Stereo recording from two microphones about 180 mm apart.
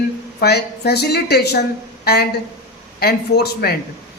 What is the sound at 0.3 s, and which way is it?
Speech, 65° left (ahead or behind).